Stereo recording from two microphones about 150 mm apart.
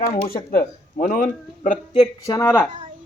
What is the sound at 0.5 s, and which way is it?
Speech, 65° left (ahead or behind).